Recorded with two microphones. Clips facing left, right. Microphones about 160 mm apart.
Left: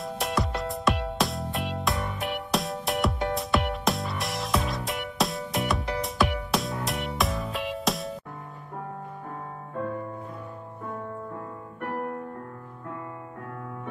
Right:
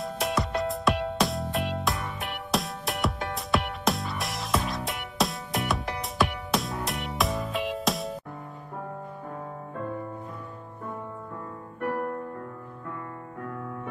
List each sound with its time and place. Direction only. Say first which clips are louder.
0.0 s music: even; centre (ahead or behind)